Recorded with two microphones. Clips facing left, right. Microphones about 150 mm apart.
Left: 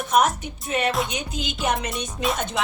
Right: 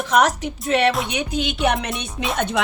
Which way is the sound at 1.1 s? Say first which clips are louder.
Right 6 dB; 75° right (ahead or behind).